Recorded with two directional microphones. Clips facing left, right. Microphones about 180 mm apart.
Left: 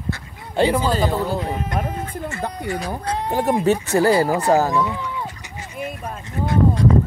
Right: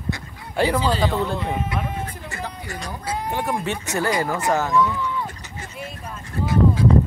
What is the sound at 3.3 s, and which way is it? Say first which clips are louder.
Speech: left 9 dB; 40° left (ahead or behind).